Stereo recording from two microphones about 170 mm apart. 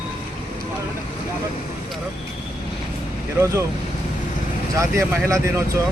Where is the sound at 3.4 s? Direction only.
15° right (ahead or behind).